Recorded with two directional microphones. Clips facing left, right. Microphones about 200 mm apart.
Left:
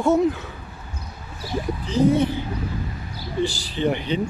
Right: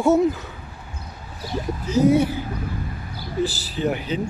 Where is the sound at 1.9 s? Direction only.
10° right (ahead or behind).